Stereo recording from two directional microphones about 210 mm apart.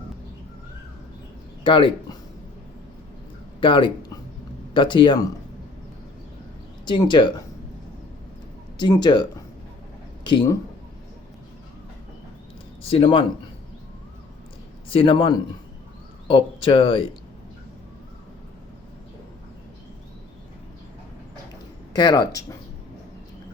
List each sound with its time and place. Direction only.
1.6 s speech: 25° left (ahead or behind)
3.6 s speech: 25° left (ahead or behind)
6.8 s speech: 20° left (ahead or behind)
8.8 s speech: 20° left (ahead or behind)
10.2 s speech: 20° left (ahead or behind)
12.8 s speech: 25° left (ahead or behind)
14.9 s speech: 25° left (ahead or behind)
21.9 s speech: 20° left (ahead or behind)